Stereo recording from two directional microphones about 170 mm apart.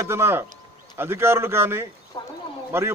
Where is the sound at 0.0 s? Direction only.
15° right (ahead or behind).